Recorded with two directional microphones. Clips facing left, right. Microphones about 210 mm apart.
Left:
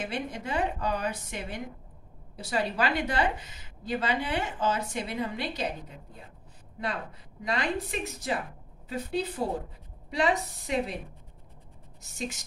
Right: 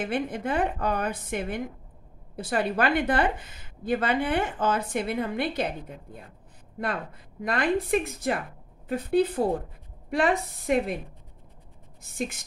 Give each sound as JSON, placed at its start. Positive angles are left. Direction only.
{"t": 0.0, "sound": "a woman's voice", "side_deg": -55}
{"t": 7.4, "sound": "a woman's voice", "side_deg": -55}
{"t": 12.0, "sound": "a woman's voice", "side_deg": -55}